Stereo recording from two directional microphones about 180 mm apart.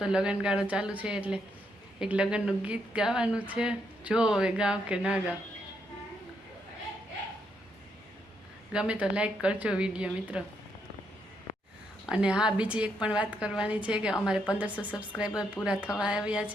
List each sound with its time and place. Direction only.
0.0 s speech: 5° right (ahead or behind)
8.7 s speech: 5° right (ahead or behind)
11.5 s a sound: 50° left (ahead or behind)
12.0 s speech: 5° right (ahead or behind)